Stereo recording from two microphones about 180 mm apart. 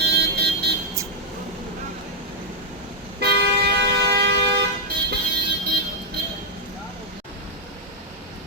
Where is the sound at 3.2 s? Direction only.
65° right (ahead or behind).